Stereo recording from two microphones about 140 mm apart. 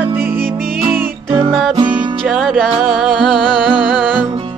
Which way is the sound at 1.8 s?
35° right (ahead or behind).